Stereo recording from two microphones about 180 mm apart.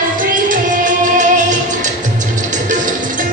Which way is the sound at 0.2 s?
45° right (ahead or behind).